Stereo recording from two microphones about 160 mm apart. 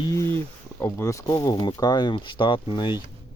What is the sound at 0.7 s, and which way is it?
Speech, 15° left (ahead or behind).